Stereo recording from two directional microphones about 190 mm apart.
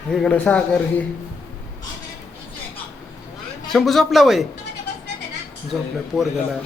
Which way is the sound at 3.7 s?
Centre (ahead or behind).